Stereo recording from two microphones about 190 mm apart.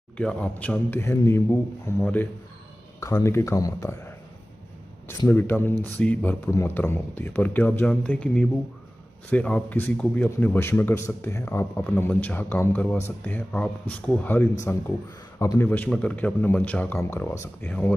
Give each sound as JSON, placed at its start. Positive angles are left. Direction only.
{"t": 0.2, "sound": "a man's voice", "side_deg": 5}